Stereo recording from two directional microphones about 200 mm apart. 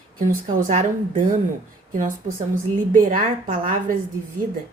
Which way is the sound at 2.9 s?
40° right (ahead or behind).